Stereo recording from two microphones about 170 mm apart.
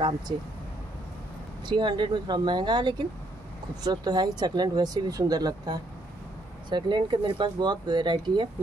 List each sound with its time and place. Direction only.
1.7 s speech: 25° right (ahead or behind)